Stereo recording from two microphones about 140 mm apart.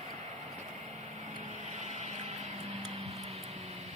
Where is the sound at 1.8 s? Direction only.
55° right (ahead or behind).